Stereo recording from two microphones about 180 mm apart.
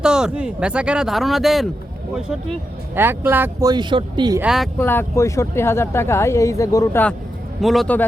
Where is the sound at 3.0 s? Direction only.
10° right (ahead or behind).